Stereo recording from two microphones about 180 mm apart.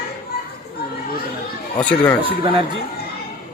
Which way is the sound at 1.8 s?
5° left (ahead or behind).